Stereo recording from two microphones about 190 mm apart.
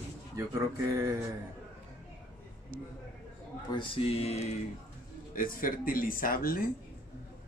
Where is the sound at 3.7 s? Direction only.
25° left (ahead or behind).